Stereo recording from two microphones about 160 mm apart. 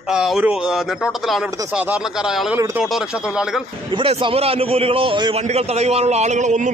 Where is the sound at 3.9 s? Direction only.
35° right (ahead or behind).